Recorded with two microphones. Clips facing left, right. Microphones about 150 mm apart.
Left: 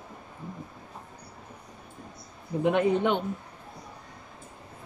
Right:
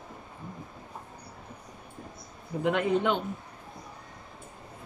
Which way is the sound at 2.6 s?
20° left (ahead or behind).